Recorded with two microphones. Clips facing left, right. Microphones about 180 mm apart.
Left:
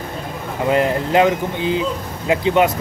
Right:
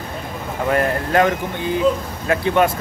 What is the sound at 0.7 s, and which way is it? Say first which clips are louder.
Speech: left 2 dB; 15° left (ahead or behind).